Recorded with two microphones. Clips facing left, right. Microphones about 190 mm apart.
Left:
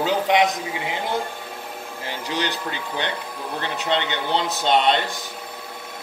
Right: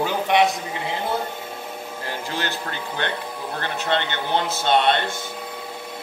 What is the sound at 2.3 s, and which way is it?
Speech, 15° left (ahead or behind).